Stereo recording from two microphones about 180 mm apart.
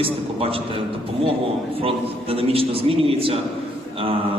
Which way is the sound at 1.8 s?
30° right (ahead or behind).